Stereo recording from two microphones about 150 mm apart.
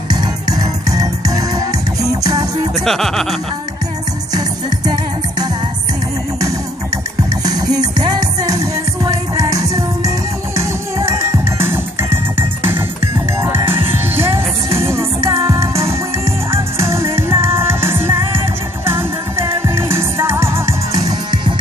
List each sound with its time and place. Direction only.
0.1 s music: 25° right (ahead or behind)
2.8 s speech: centre (ahead or behind)
4.3 s music: 25° right (ahead or behind)
7.4 s music: 25° right (ahead or behind)
11.6 s music: 15° right (ahead or behind)